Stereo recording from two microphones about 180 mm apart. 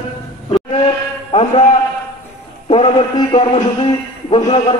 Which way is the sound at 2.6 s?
30° left (ahead or behind).